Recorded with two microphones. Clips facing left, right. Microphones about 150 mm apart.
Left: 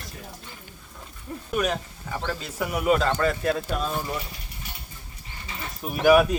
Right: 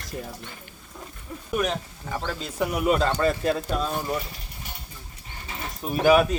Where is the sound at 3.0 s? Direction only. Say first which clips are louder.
Right 1 dB; 25° right (ahead or behind).